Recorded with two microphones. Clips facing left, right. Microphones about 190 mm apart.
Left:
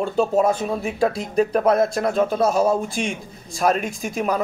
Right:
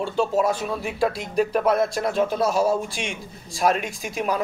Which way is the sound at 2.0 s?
50° left (ahead or behind).